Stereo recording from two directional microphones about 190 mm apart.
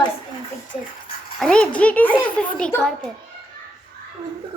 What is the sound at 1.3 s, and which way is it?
A child's voice, 5° left (ahead or behind).